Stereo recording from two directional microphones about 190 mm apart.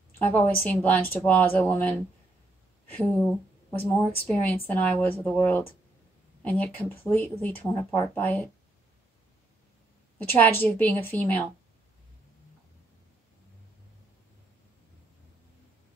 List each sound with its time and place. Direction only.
0.2 s a woman's voice: 10° left (ahead or behind)
10.1 s a woman's voice: 10° left (ahead or behind)